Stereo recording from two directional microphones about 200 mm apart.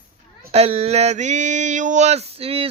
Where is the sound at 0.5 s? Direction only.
30° right (ahead or behind).